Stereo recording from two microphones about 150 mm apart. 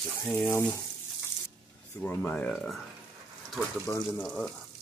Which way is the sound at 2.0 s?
10° left (ahead or behind).